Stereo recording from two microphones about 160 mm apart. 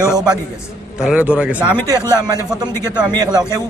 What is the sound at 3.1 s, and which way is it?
Speech, 25° right (ahead or behind).